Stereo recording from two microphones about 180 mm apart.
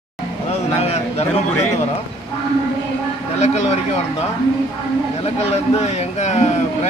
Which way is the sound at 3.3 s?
35° left (ahead or behind).